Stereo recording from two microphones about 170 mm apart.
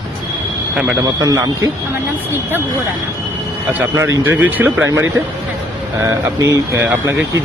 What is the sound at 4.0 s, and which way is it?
Speech, 15° right (ahead or behind).